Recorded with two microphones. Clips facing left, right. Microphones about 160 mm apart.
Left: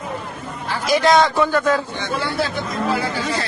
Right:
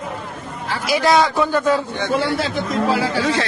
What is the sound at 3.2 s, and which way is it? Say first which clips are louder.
Speech: right 4 dB; 85° right.